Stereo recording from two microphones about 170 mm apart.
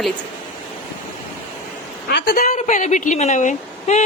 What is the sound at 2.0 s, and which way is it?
Speech, 65° left (ahead or behind).